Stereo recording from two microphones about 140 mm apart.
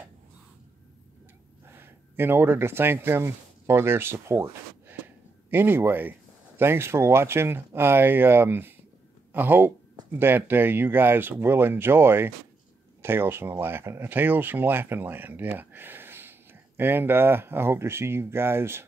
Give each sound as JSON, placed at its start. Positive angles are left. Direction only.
{"t": 1.7, "sound": "speech", "side_deg": -15}